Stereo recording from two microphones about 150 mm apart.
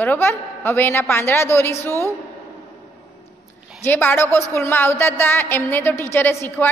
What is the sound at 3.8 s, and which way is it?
A woman's voice, 15° left (ahead or behind).